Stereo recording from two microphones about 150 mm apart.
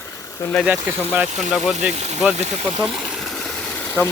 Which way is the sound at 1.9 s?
45° right (ahead or behind).